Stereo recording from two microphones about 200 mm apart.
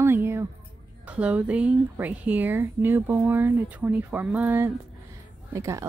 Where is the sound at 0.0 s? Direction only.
10° right (ahead or behind).